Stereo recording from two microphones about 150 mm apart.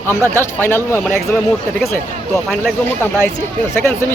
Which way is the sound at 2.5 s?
10° left (ahead or behind).